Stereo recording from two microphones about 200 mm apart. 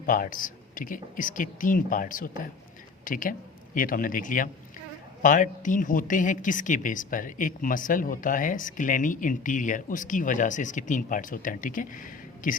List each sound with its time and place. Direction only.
0.0 s a woman's voice: 45° left (ahead or behind)